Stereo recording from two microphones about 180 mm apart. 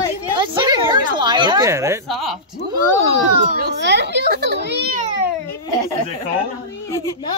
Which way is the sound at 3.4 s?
60° right (ahead or behind).